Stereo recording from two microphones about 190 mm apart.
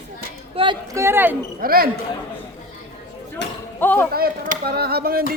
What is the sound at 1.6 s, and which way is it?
Speech, 50° right (ahead or behind).